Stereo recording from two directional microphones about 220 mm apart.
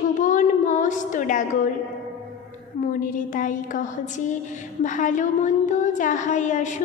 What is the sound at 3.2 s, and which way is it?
Speech, 35° left (ahead or behind).